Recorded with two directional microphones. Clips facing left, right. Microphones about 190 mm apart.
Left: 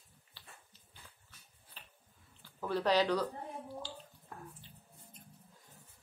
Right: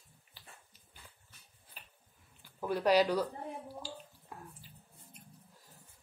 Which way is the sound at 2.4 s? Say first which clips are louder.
Right 1 dB; 15° right (ahead or behind).